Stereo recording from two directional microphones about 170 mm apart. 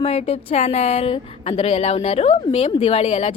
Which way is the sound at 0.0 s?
35° left (ahead or behind).